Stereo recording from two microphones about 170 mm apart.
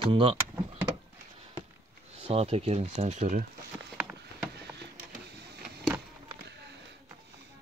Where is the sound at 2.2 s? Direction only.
35° right (ahead or behind).